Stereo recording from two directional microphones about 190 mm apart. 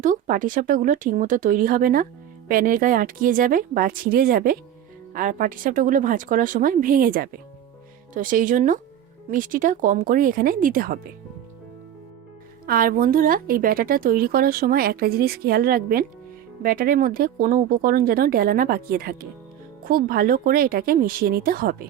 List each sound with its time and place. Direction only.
0.0 s a woman's voice: 45° right (ahead or behind)
12.6 s a woman's voice: 50° right (ahead or behind)